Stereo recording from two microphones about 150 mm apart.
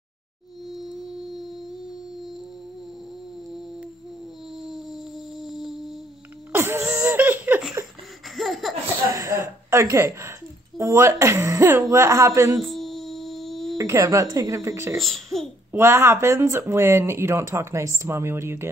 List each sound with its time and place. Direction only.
5.4 s music: centre (ahead or behind)
6.5 s laughter: 15° right (ahead or behind)
8.4 s laughter: centre (ahead or behind)
9.1 s a sound: 15° right (ahead or behind)
10.8 s speech: 20° right (ahead or behind)
12.5 s a sound: centre (ahead or behind)
13.7 s speech: 20° right (ahead or behind)
15.0 s speech: centre (ahead or behind)
15.7 s speech: 15° right (ahead or behind)